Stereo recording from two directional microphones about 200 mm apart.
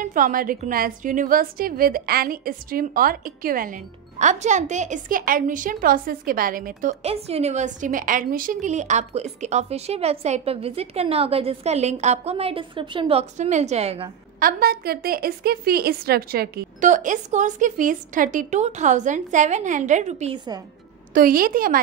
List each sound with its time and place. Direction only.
0.0 s a woman's voice: 45° right (ahead or behind)
14.4 s a woman's voice: 50° right (ahead or behind); by 20.3 s 35° right (ahead or behind)
21.1 s a woman's voice: 45° right (ahead or behind)